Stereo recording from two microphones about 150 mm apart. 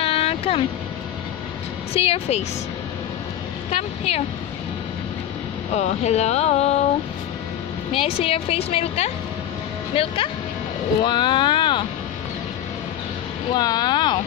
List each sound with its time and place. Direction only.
0.0 s vehicle: 40° left (ahead or behind)
2.0 s a woman's voice: 40° left (ahead or behind)
3.7 s speech: 45° left (ahead or behind)
5.7 s speech: 50° left (ahead or behind)
7.9 s a woman's voice: 40° left (ahead or behind)
13.5 s speech: 25° left (ahead or behind)